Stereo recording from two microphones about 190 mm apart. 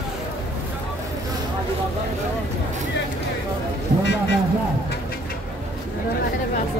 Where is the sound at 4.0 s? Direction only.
65° left (ahead or behind).